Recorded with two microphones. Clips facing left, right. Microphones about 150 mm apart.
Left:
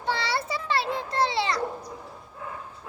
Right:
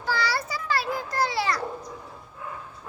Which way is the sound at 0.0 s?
25° left (ahead or behind).